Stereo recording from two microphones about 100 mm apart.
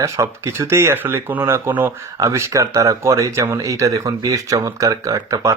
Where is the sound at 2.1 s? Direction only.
30° right (ahead or behind).